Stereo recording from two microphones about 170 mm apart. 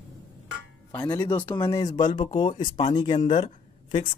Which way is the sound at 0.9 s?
25° left (ahead or behind).